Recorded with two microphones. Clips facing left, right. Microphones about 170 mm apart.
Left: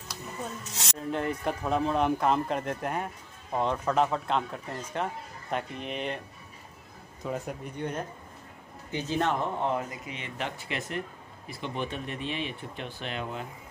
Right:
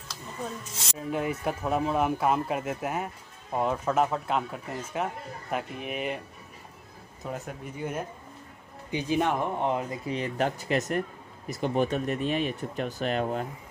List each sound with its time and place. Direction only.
0.9 s speech: 5° right (ahead or behind)
7.2 s speech: centre (ahead or behind); by 9.9 s 20° right (ahead or behind)
10.0 s speech: 40° right (ahead or behind)